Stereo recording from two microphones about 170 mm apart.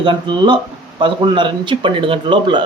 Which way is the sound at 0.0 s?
30° right (ahead or behind).